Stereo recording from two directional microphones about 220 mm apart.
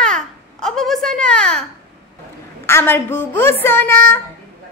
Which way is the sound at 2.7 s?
10° left (ahead or behind).